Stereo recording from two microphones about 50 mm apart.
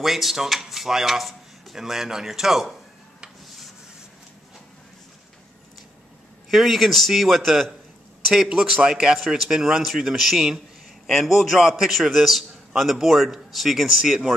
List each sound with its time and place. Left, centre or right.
0.0 s speech: centre
6.5 s a man's voice: centre
8.5 s a man's voice: centre